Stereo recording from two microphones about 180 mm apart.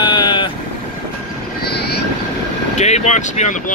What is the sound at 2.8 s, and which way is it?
Speech, 40° left (ahead or behind).